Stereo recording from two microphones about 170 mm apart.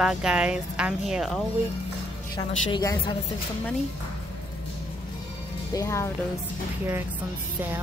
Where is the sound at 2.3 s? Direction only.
25° left (ahead or behind).